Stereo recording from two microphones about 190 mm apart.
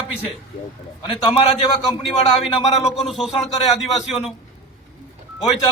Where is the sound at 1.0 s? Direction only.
25° left (ahead or behind).